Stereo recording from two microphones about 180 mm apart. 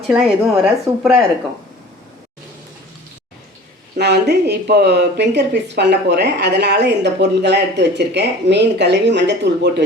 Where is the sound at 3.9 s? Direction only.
65° right (ahead or behind).